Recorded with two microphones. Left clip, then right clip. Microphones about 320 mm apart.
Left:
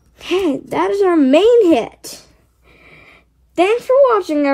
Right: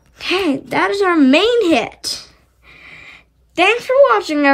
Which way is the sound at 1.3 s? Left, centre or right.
Centre.